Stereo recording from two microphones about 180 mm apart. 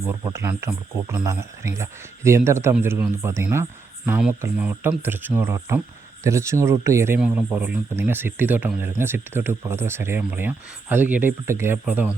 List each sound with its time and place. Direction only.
0.3 s speech: 15° right (ahead or behind)